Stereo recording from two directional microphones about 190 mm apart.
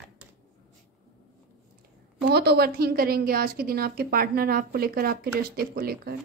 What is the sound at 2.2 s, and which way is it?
A woman's voice, 60° right (ahead or behind).